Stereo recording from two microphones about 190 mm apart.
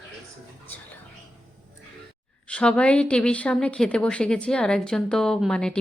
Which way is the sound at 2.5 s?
5° left (ahead or behind).